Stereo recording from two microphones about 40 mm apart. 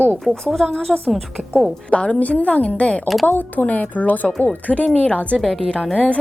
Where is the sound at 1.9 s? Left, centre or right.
Left.